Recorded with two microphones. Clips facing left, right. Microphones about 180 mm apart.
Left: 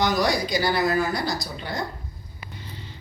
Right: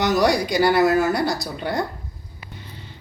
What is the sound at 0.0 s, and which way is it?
Speech, 65° right (ahead or behind).